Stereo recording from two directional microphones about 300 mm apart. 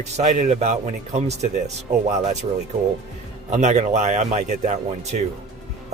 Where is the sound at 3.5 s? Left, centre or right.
Right.